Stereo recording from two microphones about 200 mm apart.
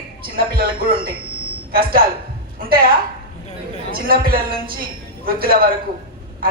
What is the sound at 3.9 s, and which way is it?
A man's voice, 50° right (ahead or behind).